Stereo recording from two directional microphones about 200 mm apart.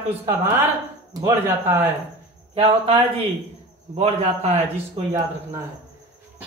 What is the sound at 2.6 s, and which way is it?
A man's voice, 30° right (ahead or behind).